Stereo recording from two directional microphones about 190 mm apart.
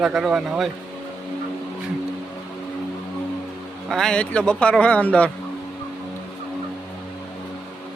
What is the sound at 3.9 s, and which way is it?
Speech, 5° left (ahead or behind).